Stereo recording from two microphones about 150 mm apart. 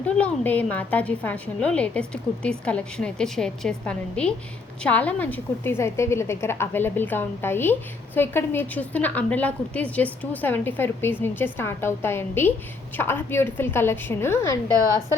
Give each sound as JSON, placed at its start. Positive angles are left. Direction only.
{"t": 0.0, "sound": "a woman's voice", "side_deg": 10}